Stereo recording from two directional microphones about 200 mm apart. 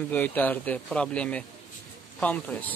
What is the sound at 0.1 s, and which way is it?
Speech, 10° left (ahead or behind).